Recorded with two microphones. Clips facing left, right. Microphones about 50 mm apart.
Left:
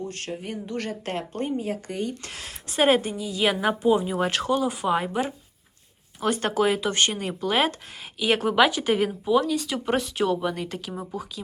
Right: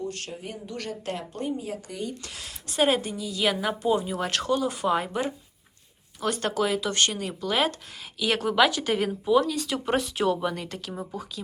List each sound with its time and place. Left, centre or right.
0.4 s speech: left
3.2 s a woman's voice: centre
6.1 s speech: left; by 11.3 s centre